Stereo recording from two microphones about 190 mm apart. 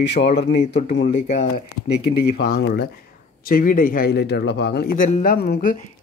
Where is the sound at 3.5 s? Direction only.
45° left (ahead or behind).